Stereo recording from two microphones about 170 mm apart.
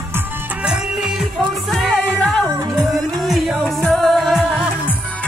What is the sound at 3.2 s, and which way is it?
Music, centre (ahead or behind).